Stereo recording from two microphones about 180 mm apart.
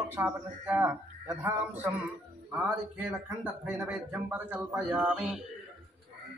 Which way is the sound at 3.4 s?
Centre (ahead or behind).